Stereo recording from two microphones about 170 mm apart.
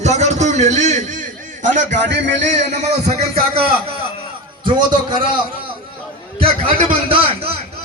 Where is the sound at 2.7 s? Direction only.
40° right (ahead or behind).